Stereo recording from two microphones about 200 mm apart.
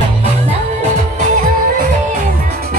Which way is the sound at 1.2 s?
40° right (ahead or behind).